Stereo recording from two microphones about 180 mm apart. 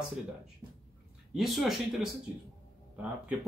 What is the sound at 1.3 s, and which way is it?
Speech, centre (ahead or behind).